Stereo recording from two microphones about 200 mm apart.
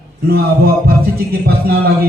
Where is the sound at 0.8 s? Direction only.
50° right (ahead or behind).